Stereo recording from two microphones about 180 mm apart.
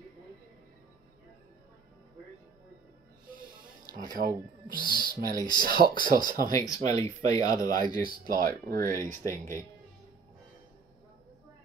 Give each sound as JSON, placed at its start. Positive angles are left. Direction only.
{"t": 4.2, "sound": "speech", "side_deg": -50}
{"t": 5.1, "sound": "speech", "side_deg": -20}
{"t": 5.6, "sound": "speech", "side_deg": -55}
{"t": 6.7, "sound": "speech", "side_deg": 20}
{"t": 7.7, "sound": "speech", "side_deg": -50}
{"t": 9.1, "sound": "speech", "side_deg": 15}